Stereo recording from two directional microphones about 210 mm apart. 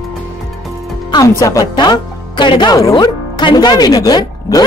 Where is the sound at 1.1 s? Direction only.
15° left (ahead or behind).